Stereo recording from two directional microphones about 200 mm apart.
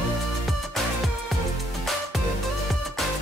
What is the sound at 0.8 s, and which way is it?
Music, centre (ahead or behind).